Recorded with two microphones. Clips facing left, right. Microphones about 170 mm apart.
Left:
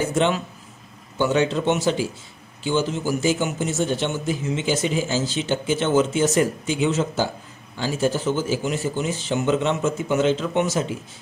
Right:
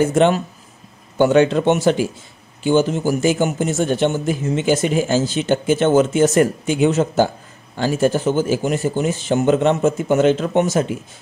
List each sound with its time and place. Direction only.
0.0 s a man's voice: 50° right (ahead or behind)